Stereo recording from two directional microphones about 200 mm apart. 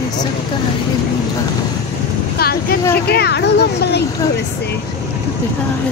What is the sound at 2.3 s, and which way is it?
Speech, 50° left (ahead or behind).